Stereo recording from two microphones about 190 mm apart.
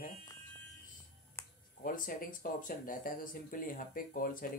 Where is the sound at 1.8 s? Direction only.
45° left (ahead or behind).